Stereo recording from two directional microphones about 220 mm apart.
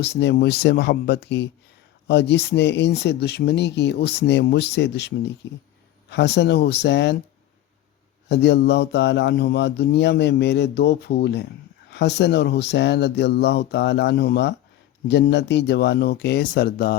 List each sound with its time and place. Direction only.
0.0 s speech: 50° left (ahead or behind)
8.3 s speech: 50° left (ahead or behind)